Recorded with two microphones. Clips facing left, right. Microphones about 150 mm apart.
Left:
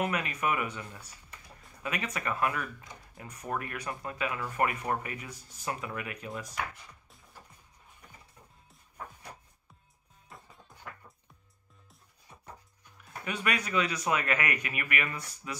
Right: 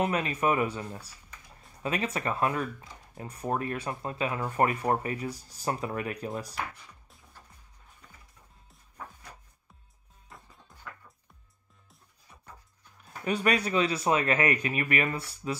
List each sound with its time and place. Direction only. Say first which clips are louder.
0.0 s speech: right 4 dB; 30° right (ahead or behind)
10.3 s music: even; centre (ahead or behind)
13.2 s speech: right 6 dB; 35° right (ahead or behind)